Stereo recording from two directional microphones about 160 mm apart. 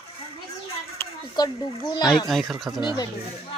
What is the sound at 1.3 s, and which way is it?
Speech, 25° left (ahead or behind).